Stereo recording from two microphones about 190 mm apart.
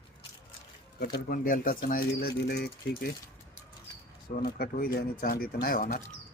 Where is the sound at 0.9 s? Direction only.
55° left (ahead or behind).